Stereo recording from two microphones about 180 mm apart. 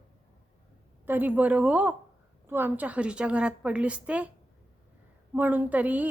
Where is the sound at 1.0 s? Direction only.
10° right (ahead or behind).